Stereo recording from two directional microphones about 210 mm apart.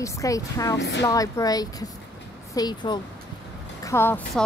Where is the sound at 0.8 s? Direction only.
55° left (ahead or behind).